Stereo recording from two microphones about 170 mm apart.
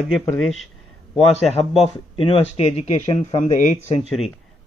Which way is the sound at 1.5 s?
35° left (ahead or behind).